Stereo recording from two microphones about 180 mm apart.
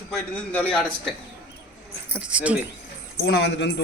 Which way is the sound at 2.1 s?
5° right (ahead or behind).